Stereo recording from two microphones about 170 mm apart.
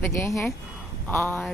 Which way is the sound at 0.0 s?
15° left (ahead or behind).